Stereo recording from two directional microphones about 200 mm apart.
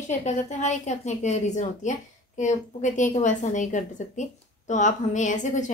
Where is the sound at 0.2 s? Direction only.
35° left (ahead or behind).